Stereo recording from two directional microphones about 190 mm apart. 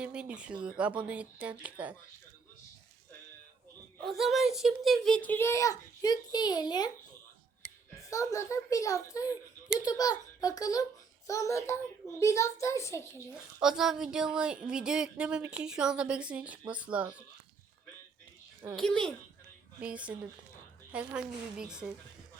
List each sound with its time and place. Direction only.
0.0 s speech: 5° right (ahead or behind)
4.0 s a child's voice: centre (ahead or behind); by 6.9 s 20° left (ahead or behind)
8.1 s a child's voice: 15° left (ahead or behind)
13.3 s a woman's voice: 5° right (ahead or behind)
18.8 s a woman's voice: 5° left (ahead or behind)